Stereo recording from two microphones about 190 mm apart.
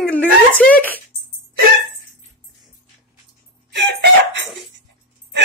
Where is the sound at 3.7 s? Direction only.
65° right (ahead or behind).